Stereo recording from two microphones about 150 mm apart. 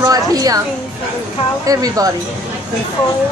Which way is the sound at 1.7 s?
25° right (ahead or behind).